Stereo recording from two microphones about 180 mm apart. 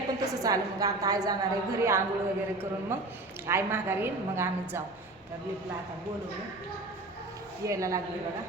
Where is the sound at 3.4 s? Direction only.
15° right (ahead or behind).